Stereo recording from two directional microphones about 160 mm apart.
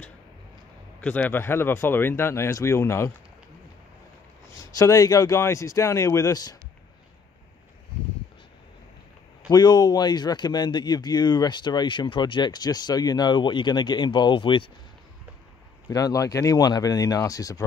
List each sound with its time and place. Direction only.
1.0 s speech: 10° left (ahead or behind)
4.6 s speech: 20° left (ahead or behind)
9.5 s speech: 25° left (ahead or behind)
15.9 s speech: 20° left (ahead or behind)